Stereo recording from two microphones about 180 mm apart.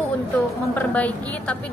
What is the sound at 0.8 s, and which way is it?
Speech, 10° left (ahead or behind).